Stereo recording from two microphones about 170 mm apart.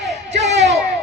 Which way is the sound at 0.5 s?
90° right.